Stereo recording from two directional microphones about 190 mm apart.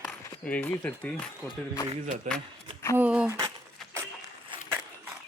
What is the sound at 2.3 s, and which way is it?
Speech, 40° right (ahead or behind).